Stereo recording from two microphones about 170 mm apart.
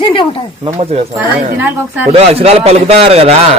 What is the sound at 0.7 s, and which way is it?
Speech, 35° right (ahead or behind).